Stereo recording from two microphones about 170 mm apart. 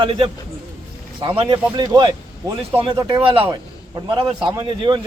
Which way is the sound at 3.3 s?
30° right (ahead or behind).